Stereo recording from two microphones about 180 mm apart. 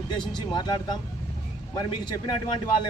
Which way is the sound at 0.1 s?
25° left (ahead or behind).